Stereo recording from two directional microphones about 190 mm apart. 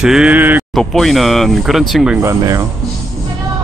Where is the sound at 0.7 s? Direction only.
Centre (ahead or behind).